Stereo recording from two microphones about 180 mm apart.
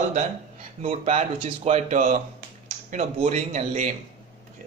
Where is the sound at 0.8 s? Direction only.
35° right (ahead or behind).